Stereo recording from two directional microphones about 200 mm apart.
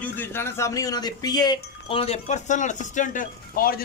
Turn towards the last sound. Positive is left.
turn(degrees=45)  # may be behind; listen again after turning